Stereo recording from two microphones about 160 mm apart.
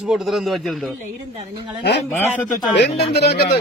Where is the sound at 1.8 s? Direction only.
90° left.